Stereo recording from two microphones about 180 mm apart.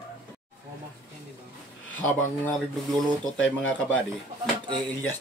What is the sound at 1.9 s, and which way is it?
Speech, 10° left (ahead or behind).